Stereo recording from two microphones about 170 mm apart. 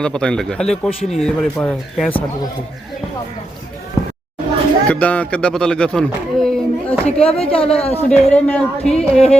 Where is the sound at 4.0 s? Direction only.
20° left (ahead or behind).